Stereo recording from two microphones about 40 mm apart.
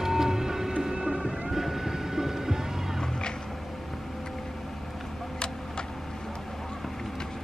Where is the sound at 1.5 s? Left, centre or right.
Centre.